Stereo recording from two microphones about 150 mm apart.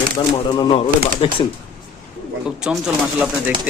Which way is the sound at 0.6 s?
35° left (ahead or behind).